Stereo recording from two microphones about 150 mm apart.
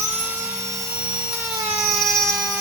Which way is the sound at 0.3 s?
20° right (ahead or behind).